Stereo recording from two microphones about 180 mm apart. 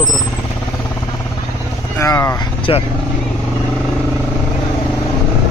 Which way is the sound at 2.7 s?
30° left (ahead or behind).